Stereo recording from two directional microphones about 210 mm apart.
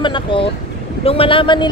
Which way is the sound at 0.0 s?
25° left (ahead or behind).